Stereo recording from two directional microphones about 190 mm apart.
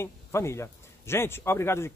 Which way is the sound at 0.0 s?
15° left (ahead or behind).